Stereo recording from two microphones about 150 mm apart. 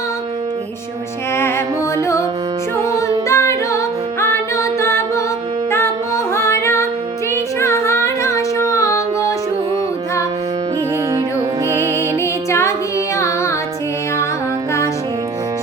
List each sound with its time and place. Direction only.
1.4 s music: 15° left (ahead or behind)
2.9 s music: 20° left (ahead or behind)
6.3 s music: 20° left (ahead or behind)
7.6 s singing: 20° left (ahead or behind)
11.7 s music: 20° right (ahead or behind)
12.2 s music: 20° left (ahead or behind)